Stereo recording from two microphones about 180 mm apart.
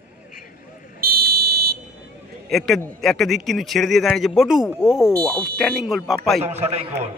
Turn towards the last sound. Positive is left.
turn(degrees=-35)  # may be behind; listen again after turning